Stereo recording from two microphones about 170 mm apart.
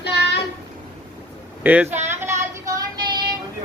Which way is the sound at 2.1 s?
15° right (ahead or behind).